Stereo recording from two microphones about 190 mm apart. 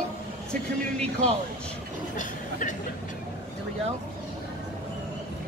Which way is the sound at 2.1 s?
40° left (ahead or behind).